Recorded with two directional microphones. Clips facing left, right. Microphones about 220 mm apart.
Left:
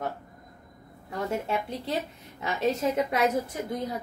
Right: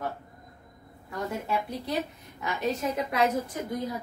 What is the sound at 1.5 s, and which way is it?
A woman's voice, 25° left (ahead or behind).